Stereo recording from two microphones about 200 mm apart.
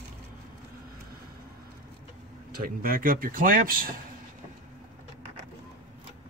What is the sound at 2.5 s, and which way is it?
Speech, 45° right (ahead or behind).